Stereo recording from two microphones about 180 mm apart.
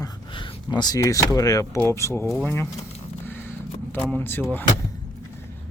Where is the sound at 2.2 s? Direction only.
5° left (ahead or behind).